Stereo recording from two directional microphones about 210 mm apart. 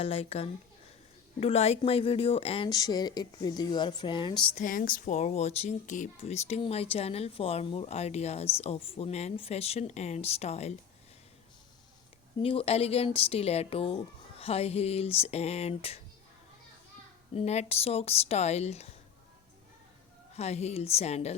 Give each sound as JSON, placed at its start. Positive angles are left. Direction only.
{"t": 0.0, "sound": "speech", "side_deg": 25}
{"t": 4.5, "sound": "speech", "side_deg": 40}
{"t": 12.4, "sound": "speech", "side_deg": 25}
{"t": 17.3, "sound": "speech", "side_deg": 30}
{"t": 20.3, "sound": "speech", "side_deg": 30}